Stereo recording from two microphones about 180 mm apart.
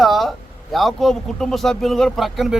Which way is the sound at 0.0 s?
Centre (ahead or behind).